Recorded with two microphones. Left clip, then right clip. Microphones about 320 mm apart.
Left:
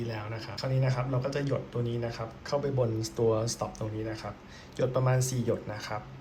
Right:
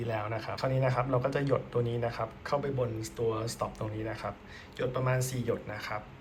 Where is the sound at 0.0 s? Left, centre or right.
Centre.